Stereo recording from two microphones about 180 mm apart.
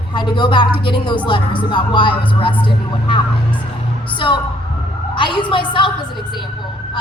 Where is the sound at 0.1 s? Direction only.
25° left (ahead or behind).